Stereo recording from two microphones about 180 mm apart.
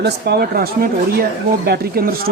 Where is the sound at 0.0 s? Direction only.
65° right (ahead or behind).